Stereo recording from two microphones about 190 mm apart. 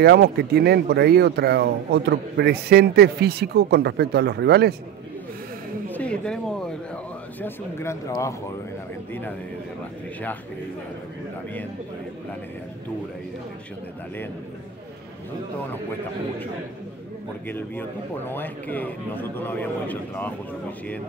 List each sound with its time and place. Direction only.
0.0 s speech: 60° right (ahead or behind)
5.9 s speech: 5° left (ahead or behind)
7.4 s speech: 15° left (ahead or behind)
17.5 s speech: 10° left (ahead or behind)